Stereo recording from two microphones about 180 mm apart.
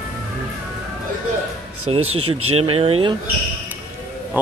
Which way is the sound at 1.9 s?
35° right (ahead or behind).